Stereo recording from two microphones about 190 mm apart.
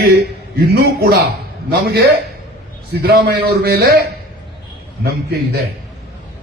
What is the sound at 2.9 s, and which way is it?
A man's voice, 60° right (ahead or behind).